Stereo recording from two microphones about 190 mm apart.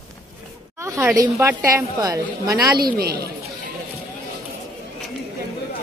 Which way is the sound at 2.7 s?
50° right (ahead or behind).